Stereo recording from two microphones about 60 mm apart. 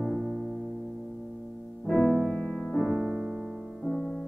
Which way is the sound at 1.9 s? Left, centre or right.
Centre.